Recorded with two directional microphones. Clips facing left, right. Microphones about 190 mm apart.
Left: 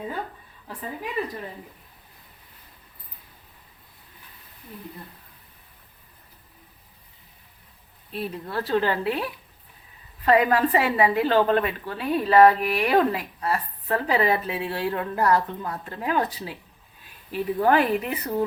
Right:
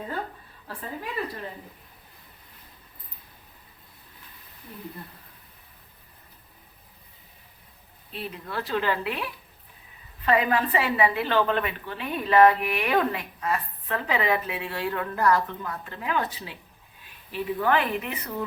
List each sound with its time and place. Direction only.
8.1 s a woman's voice: 40° left (ahead or behind)